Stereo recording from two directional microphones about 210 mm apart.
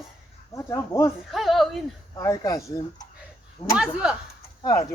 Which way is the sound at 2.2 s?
15° left (ahead or behind).